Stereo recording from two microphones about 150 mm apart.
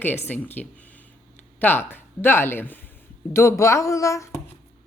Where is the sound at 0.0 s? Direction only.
15° left (ahead or behind).